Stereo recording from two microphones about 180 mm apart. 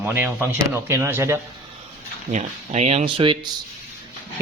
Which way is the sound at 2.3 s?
40° right (ahead or behind).